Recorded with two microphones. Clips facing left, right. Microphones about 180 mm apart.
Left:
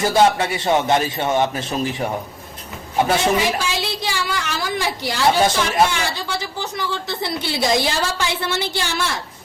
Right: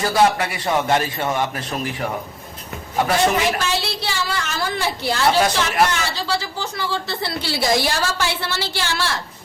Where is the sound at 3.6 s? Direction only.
15° left (ahead or behind).